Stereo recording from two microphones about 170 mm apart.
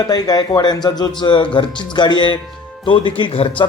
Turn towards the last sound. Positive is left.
turn(degrees=35)  # may be behind; listen again after turning